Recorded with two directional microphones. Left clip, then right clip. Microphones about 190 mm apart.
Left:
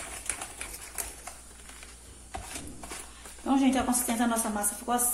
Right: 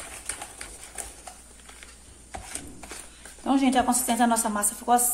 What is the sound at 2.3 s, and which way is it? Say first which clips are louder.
Mechanisms: right 1 dB; 10° right (ahead or behind).